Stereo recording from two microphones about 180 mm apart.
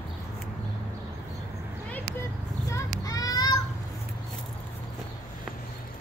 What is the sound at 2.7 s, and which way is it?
Children playing, 20° left (ahead or behind).